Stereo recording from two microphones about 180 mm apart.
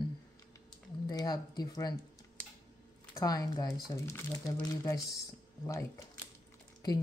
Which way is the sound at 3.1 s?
20° left (ahead or behind).